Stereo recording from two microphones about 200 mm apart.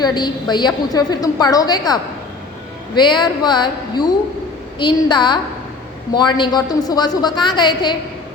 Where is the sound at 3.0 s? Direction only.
20° left (ahead or behind).